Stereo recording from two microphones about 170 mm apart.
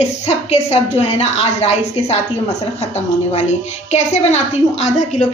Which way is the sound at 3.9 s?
40° left (ahead or behind).